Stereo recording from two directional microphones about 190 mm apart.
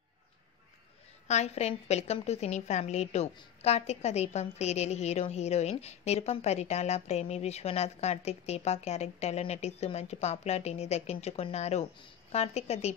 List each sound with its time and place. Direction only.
1.2 s a woman's voice: 35° left (ahead or behind)